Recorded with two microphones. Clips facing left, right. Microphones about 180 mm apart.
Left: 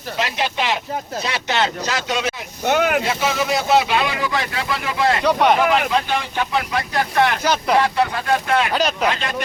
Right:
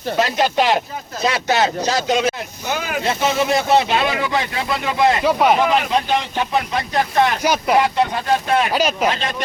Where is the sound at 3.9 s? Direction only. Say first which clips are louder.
Right 2 dB; 25° right (ahead or behind).